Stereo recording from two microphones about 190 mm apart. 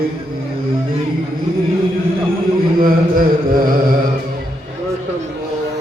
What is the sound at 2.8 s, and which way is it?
Mantra, 50° right (ahead or behind).